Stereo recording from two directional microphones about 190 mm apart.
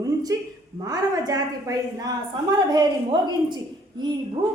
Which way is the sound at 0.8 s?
20° right (ahead or behind).